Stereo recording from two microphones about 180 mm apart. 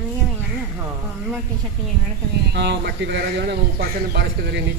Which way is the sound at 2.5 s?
70° right (ahead or behind).